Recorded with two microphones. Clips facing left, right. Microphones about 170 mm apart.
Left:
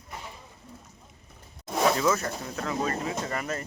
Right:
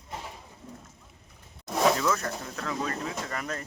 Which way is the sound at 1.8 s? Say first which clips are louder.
Left 1 dB; 5° left (ahead or behind).